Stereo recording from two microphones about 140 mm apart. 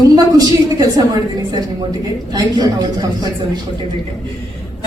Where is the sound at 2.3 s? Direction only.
30° right (ahead or behind).